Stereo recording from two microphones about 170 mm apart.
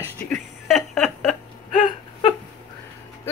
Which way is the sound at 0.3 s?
Centre (ahead or behind).